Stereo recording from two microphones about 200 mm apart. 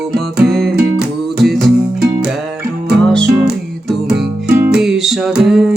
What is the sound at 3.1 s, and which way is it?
Music, centre (ahead or behind).